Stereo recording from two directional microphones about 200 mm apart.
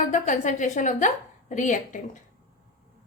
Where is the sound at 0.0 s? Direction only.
40° left (ahead or behind).